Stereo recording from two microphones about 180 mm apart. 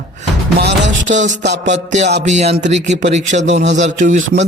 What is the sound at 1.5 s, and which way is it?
Music, 80° right.